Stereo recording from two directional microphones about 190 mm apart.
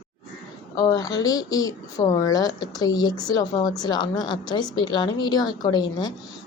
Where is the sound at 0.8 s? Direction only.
20° left (ahead or behind).